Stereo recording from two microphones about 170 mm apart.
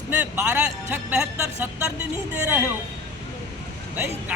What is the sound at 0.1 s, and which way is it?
Speech, 10° right (ahead or behind).